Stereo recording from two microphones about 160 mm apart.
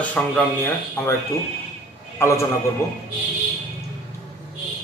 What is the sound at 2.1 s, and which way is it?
Speech, 20° left (ahead or behind).